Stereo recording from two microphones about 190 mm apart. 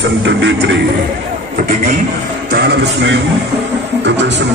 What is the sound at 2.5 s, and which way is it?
Speech, 60° right (ahead or behind).